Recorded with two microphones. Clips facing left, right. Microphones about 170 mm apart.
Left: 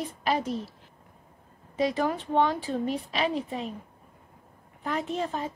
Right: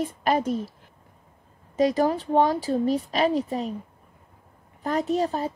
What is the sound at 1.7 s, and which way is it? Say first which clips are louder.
A child's voice: right 5 dB; 40° right (ahead or behind).